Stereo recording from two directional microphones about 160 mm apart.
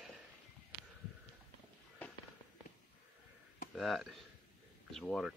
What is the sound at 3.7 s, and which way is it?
Speech, centre (ahead or behind).